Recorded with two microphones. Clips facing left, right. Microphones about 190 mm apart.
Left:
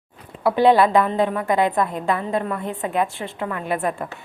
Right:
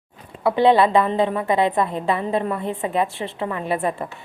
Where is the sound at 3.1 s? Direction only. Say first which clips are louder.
Right 2 dB; 30° right (ahead or behind).